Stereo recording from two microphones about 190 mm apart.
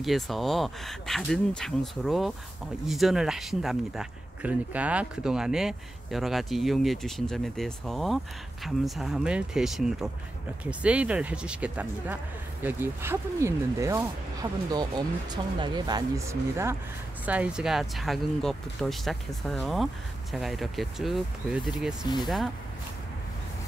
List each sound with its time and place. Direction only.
0.0 s speech: centre (ahead or behind)